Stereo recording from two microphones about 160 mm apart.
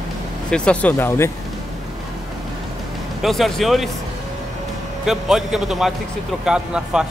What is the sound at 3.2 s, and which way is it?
Speech, centre (ahead or behind).